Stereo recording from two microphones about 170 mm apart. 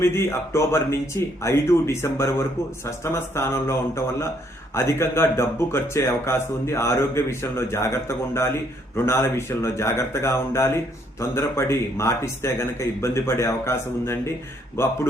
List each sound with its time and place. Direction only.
0.0 s speech: 15° left (ahead or behind)